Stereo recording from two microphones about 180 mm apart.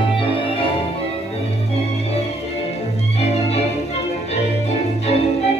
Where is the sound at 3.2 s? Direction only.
35° left (ahead or behind).